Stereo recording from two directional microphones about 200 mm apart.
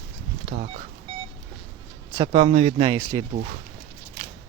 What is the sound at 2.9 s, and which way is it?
Speech, 20° right (ahead or behind).